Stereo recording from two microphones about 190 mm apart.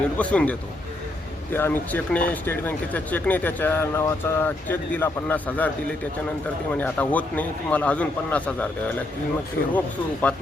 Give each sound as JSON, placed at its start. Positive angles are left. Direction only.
{"t": 0.2, "sound": "speech", "side_deg": 5}
{"t": 1.5, "sound": "speech", "side_deg": 10}
{"t": 6.7, "sound": "speech", "side_deg": 10}
{"t": 9.7, "sound": "speech", "side_deg": 10}